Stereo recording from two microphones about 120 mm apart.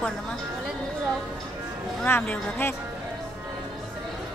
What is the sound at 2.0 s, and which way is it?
Speech, 20° left (ahead or behind).